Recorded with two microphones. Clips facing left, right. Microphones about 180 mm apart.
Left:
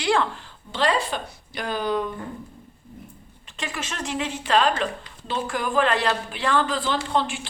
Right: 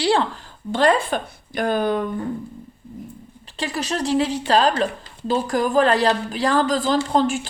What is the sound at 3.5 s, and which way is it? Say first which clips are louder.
Speech: right 7 dB; 35° right (ahead or behind).